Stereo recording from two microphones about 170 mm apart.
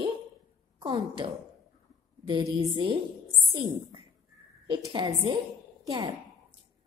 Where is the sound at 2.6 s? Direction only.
30° right (ahead or behind).